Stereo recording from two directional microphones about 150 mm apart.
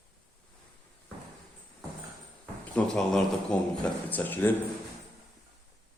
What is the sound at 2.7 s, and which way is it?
A man's voice, 5° left (ahead or behind).